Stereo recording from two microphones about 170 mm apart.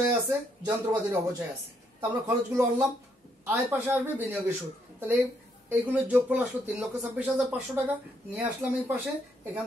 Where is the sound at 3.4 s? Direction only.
10° right (ahead or behind).